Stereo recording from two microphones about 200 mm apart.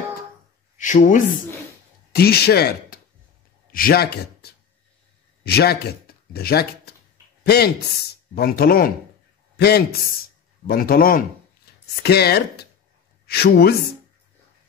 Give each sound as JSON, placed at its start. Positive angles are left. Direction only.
{"t": 0.7, "sound": "speech", "side_deg": 40}
{"t": 2.1, "sound": "speech", "side_deg": 50}